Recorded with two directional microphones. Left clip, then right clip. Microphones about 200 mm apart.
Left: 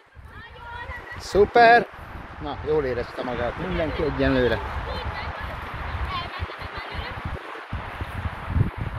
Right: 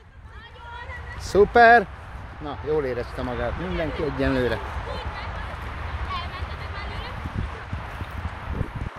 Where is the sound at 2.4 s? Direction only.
5° right (ahead or behind).